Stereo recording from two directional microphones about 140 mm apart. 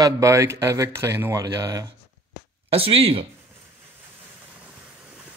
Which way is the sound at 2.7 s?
45° right (ahead or behind).